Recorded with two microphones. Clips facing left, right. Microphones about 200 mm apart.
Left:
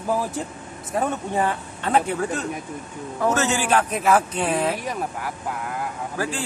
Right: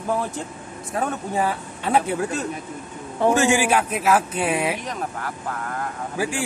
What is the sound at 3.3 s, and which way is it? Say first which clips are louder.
A man's voice: right 2 dB; 10° right (ahead or behind).